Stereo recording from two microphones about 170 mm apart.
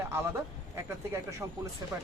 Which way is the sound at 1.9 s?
15° right (ahead or behind).